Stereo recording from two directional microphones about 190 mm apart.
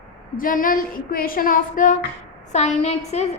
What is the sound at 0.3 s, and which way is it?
A woman's voice, 45° left (ahead or behind).